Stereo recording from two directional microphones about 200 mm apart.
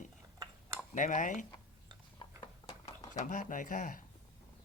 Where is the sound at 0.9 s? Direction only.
40° left (ahead or behind).